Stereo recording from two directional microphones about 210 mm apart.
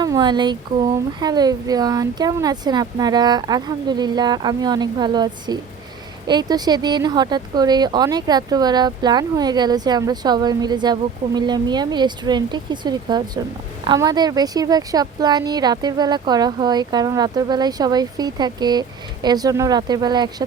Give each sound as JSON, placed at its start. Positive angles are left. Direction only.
{"t": 0.0, "sound": "a woman's voice", "side_deg": -20}